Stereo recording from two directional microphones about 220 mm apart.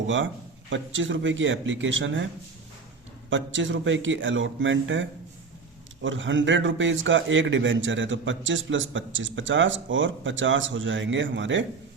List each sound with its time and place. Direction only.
0.7 s a man's voice: 60° right (ahead or behind)
3.2 s a man's voice: 60° right (ahead or behind)